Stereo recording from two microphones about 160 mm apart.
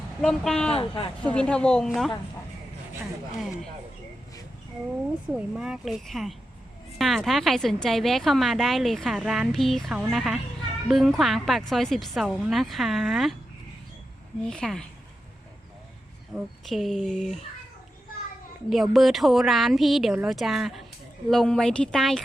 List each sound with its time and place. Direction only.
0.2 s a woman's voice: 5° left (ahead or behind)
0.7 s speech: 35° left (ahead or behind)
1.2 s a woman's voice: 5° left (ahead or behind)
3.3 s a woman's voice: centre (ahead or behind)
5.3 s a woman's voice: 5° right (ahead or behind)
14.4 s a woman's voice: 5° left (ahead or behind)
16.3 s a woman's voice: centre (ahead or behind)
18.7 s a woman's voice: centre (ahead or behind)